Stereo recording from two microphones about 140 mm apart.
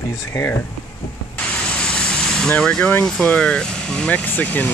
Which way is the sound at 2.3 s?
5° left (ahead or behind).